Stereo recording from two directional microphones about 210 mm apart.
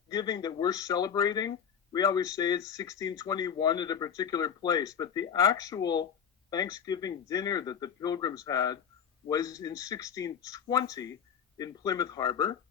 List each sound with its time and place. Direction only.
0.1 s speech: 20° left (ahead or behind)